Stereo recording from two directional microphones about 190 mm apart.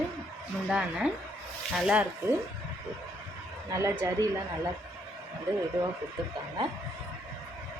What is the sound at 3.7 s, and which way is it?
Speech, 15° right (ahead or behind).